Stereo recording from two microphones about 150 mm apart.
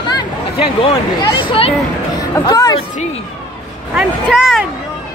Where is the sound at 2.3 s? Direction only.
20° left (ahead or behind).